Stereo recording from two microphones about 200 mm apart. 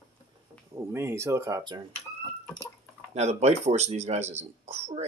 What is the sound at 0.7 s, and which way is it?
Speech, 15° right (ahead or behind).